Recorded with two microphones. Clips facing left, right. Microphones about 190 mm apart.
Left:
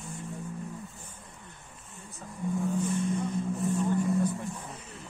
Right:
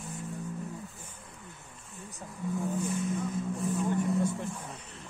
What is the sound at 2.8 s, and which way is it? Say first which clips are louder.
Vehicle: left 2 dB; centre (ahead or behind).